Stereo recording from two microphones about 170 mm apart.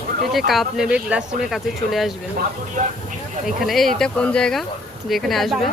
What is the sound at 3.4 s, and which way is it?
Speech, centre (ahead or behind).